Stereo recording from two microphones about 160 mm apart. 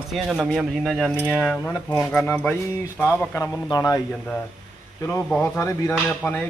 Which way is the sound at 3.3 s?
20° left (ahead or behind).